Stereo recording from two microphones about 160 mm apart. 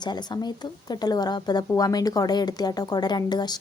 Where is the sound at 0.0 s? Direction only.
25° left (ahead or behind).